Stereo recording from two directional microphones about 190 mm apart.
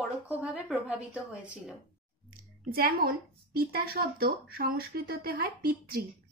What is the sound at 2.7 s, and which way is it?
Speech, 55° right (ahead or behind).